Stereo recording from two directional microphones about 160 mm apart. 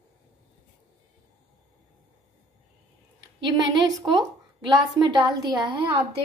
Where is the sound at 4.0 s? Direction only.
25° right (ahead or behind).